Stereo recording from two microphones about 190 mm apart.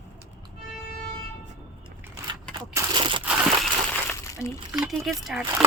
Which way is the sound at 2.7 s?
25° right (ahead or behind).